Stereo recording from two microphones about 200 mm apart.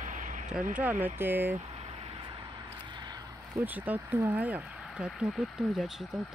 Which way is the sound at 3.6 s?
10° right (ahead or behind).